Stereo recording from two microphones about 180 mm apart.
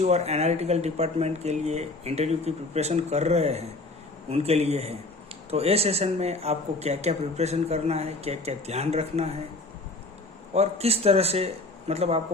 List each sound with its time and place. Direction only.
0.0 s speech: 40° right (ahead or behind)
10.5 s speech: 35° right (ahead or behind)